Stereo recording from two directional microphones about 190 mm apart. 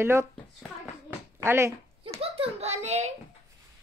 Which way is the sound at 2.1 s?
30° right (ahead or behind).